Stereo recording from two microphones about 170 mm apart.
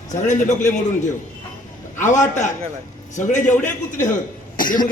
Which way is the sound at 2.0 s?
45° left (ahead or behind).